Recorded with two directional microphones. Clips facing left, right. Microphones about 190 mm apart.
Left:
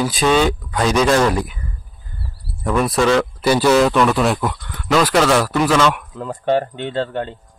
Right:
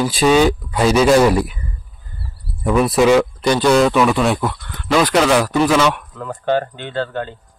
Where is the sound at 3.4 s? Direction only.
5° left (ahead or behind).